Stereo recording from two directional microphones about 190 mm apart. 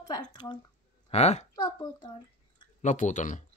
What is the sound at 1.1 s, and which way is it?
Speech, 35° left (ahead or behind).